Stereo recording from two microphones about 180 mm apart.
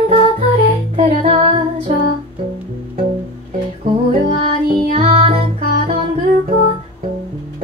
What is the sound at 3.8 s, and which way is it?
Music, 35° right (ahead or behind).